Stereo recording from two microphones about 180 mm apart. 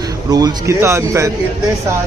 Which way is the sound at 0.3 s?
20° right (ahead or behind).